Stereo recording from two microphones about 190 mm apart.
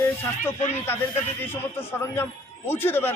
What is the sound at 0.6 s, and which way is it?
Speech, 35° left (ahead or behind).